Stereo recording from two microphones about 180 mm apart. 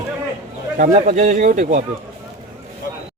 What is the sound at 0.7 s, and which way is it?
Speech, 45° right (ahead or behind).